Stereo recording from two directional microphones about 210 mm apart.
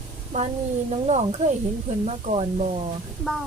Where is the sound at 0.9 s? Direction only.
30° right (ahead or behind).